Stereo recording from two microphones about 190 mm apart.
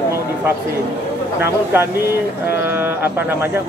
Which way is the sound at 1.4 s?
10° right (ahead or behind).